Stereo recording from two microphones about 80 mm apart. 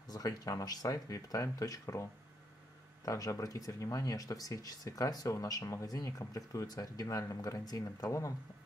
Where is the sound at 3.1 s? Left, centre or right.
Left.